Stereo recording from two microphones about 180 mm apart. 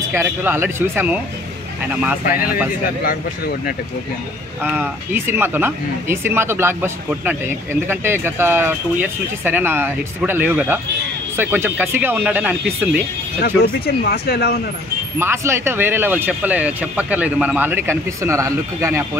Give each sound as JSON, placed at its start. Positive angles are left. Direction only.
{"t": 0.1, "sound": "speech", "side_deg": -15}
{"t": 4.6, "sound": "speech", "side_deg": -10}
{"t": 13.4, "sound": "speech", "side_deg": 60}
{"t": 15.1, "sound": "speech", "side_deg": -15}